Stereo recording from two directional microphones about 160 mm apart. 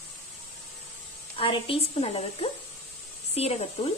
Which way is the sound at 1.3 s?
35° left (ahead or behind).